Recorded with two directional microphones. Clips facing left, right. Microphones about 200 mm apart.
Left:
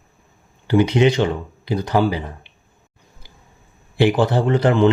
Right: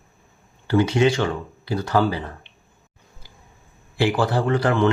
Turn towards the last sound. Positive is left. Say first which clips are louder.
# left 4 dB
turn(degrees=20)  # may be behind; listen again after turning